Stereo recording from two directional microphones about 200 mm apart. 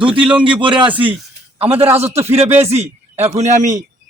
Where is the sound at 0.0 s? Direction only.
25° right (ahead or behind).